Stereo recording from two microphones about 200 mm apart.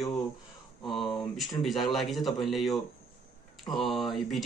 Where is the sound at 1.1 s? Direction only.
Centre (ahead or behind).